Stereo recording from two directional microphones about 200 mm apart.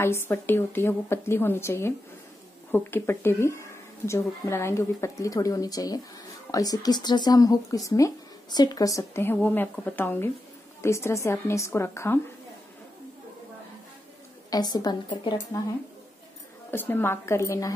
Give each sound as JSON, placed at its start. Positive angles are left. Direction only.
{"t": 0.0, "sound": "speech", "side_deg": 10}
{"t": 14.5, "sound": "a woman's voice", "side_deg": 20}
{"t": 16.7, "sound": "speech", "side_deg": 10}